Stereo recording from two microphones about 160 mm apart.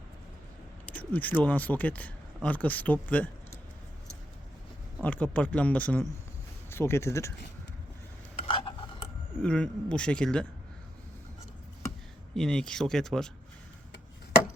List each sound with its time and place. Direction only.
0.9 s speech: 10° left (ahead or behind)
5.0 s speech: 10° left (ahead or behind)
8.4 s stir: 35° left (ahead or behind)
9.4 s speech: 5° left (ahead or behind)
12.3 s speech: 5° left (ahead or behind)